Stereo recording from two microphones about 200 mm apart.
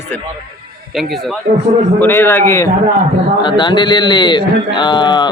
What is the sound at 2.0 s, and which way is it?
Speech, 10° left (ahead or behind).